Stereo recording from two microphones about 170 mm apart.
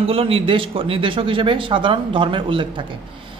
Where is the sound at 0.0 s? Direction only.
35° right (ahead or behind).